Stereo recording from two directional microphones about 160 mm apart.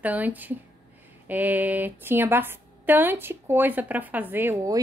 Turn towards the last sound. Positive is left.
turn(degrees=-20)  # may be behind; listen again after turning